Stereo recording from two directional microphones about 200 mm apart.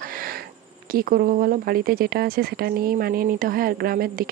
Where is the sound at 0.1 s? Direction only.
45° right (ahead or behind).